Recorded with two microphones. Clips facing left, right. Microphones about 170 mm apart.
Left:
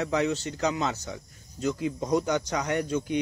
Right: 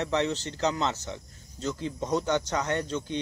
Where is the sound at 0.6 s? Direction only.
10° left (ahead or behind).